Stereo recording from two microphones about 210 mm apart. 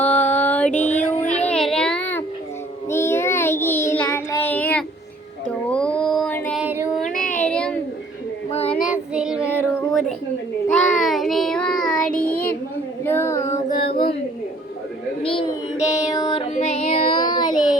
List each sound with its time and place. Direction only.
0.0 s child singing: 10° left (ahead or behind)
5.6 s a sound: 5° left (ahead or behind)
6.6 s child singing: 10° right (ahead or behind)
7.1 s child singing: 40° left (ahead or behind)
7.4 s a sound: 5° left (ahead or behind)
8.7 s child singing: 5° right (ahead or behind)
10.7 s child singing: 5° left (ahead or behind)
13.4 s music: 35° left (ahead or behind)
13.8 s a sound: 50° left (ahead or behind)
15.2 s child singing: 25° left (ahead or behind)
17.5 s child singing: 40° left (ahead or behind)